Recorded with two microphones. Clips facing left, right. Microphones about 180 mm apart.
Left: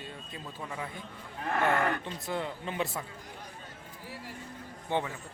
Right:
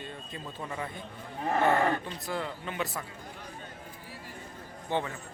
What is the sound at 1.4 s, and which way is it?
Cattle, 30° right (ahead or behind).